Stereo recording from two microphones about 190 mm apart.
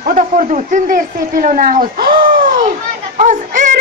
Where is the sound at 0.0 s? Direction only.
45° right (ahead or behind).